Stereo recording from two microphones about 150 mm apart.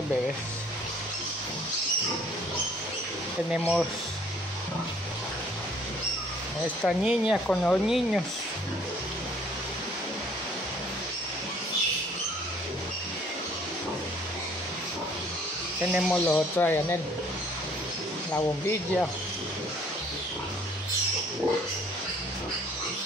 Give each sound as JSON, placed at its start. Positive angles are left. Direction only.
{"t": 3.5, "sound": "speech", "side_deg": -5}
{"t": 6.9, "sound": "speech", "side_deg": -5}
{"t": 7.4, "sound": "speech", "side_deg": 5}
{"t": 15.8, "sound": "speech", "side_deg": -5}
{"t": 16.1, "sound": "speech", "side_deg": 10}
{"t": 18.3, "sound": "speech", "side_deg": 15}